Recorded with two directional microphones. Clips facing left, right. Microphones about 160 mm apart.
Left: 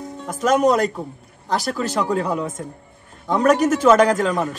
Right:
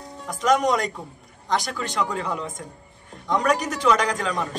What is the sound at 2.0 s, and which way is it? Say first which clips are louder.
Speech: left 4 dB; 45° left (ahead or behind).